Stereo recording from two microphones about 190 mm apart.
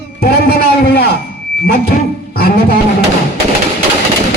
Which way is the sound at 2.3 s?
50° left (ahead or behind).